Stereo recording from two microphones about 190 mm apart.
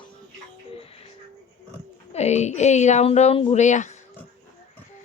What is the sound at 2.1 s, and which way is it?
Speech, 35° left (ahead or behind).